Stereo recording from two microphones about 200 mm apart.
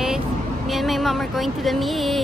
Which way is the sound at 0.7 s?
Centre (ahead or behind).